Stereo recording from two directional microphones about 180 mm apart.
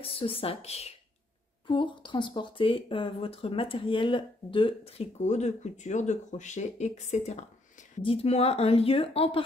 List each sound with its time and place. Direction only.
0.0 s speech: 30° left (ahead or behind)